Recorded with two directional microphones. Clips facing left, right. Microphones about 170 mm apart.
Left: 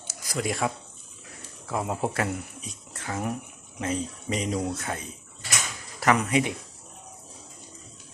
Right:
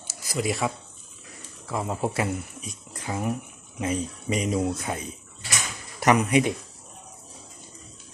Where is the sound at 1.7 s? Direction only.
5° left (ahead or behind).